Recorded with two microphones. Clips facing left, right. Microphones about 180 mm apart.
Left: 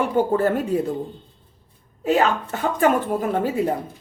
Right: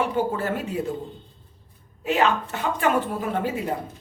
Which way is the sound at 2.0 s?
45° left (ahead or behind).